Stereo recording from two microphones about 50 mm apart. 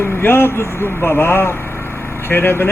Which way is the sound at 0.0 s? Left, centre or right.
Left.